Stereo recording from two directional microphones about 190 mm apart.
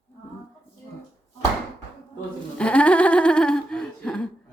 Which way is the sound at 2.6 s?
5° left (ahead or behind).